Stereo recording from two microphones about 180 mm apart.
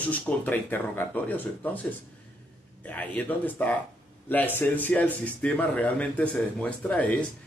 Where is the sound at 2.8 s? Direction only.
10° left (ahead or behind).